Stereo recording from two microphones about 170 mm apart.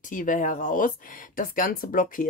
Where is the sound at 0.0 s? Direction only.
50° left (ahead or behind).